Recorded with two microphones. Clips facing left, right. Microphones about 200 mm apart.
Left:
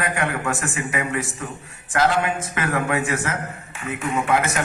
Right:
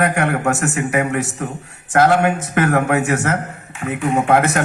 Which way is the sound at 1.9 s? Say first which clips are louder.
Right 6 dB; 55° right (ahead or behind).